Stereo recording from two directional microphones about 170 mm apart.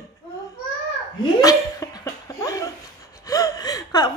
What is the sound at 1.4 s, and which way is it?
Laughter, 20° left (ahead or behind).